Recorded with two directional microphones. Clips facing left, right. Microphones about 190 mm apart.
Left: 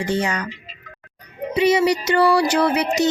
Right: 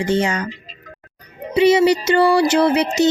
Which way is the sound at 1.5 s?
30° right (ahead or behind).